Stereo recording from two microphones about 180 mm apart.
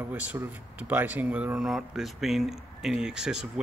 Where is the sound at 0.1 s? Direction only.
10° right (ahead or behind).